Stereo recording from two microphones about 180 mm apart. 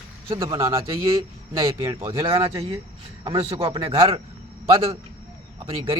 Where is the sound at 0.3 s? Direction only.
25° right (ahead or behind).